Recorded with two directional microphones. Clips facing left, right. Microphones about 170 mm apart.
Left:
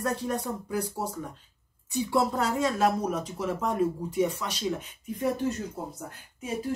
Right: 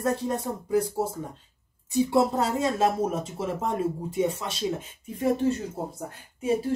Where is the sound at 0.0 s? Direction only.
25° right (ahead or behind).